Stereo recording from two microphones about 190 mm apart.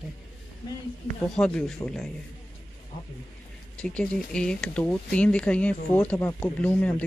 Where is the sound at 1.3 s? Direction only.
5° left (ahead or behind).